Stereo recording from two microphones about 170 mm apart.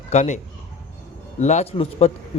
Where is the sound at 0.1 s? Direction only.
40° left (ahead or behind).